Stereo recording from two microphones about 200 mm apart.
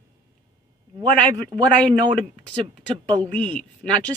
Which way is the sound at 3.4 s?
5° left (ahead or behind).